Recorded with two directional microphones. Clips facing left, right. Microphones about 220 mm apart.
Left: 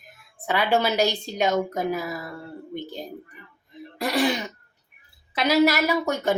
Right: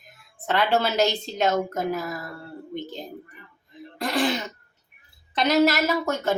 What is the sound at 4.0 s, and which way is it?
Speech, 10° left (ahead or behind).